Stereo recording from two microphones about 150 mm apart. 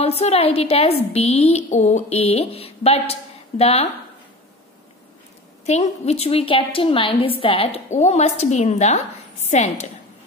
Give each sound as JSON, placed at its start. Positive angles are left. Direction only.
{"t": 0.0, "sound": "a woman's voice", "side_deg": 40}
{"t": 5.7, "sound": "a woman's voice", "side_deg": 45}